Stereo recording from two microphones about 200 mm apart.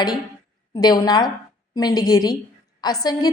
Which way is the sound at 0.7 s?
20° left (ahead or behind).